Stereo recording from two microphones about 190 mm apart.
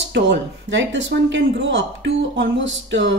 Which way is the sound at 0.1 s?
70° right (ahead or behind).